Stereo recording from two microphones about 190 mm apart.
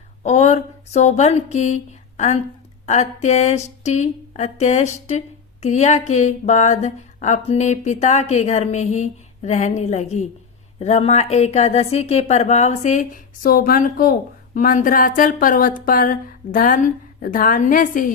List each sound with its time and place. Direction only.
0.2 s speech: 35° left (ahead or behind)